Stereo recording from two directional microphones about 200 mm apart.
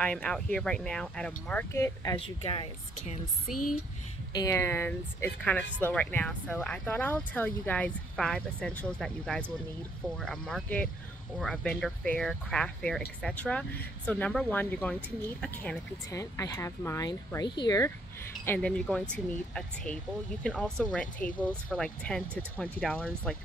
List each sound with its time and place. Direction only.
0.0 s speech: 5° left (ahead or behind)
2.2 s speech: 25° left (ahead or behind)
4.3 s speech: 15° left (ahead or behind)